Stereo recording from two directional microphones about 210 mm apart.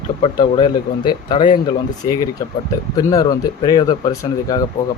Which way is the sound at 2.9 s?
15° left (ahead or behind).